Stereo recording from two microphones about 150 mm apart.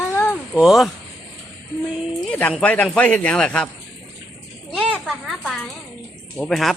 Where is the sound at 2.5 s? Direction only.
10° left (ahead or behind).